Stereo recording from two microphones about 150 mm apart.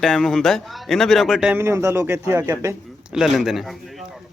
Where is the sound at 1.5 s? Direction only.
20° right (ahead or behind).